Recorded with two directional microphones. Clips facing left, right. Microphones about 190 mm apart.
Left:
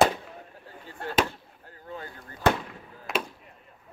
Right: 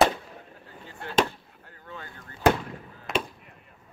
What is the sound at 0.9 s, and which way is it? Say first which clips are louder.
Chop: left 4 dB; 50° left (ahead or behind).